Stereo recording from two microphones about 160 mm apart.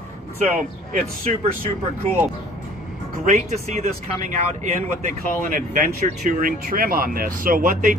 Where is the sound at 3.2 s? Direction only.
45° right (ahead or behind).